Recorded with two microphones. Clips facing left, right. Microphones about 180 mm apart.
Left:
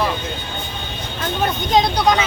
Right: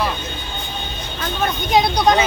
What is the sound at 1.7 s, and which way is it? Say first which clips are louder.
Speech: even; 10° right (ahead or behind).